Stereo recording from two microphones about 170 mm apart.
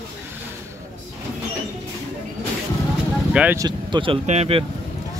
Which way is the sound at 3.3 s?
10° right (ahead or behind).